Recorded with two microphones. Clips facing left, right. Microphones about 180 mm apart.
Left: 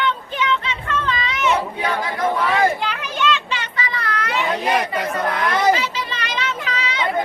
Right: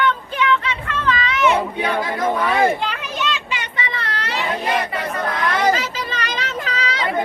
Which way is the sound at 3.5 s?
25° right (ahead or behind).